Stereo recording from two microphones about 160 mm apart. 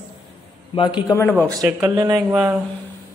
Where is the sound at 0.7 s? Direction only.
30° left (ahead or behind).